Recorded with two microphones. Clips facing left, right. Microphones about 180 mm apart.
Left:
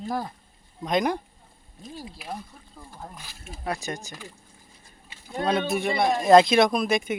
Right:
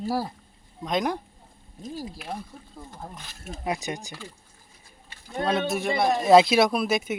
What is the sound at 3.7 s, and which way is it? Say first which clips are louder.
Speech: right 1 dB; 15° right (ahead or behind).